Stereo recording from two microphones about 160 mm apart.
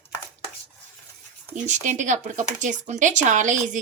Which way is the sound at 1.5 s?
50° right (ahead or behind).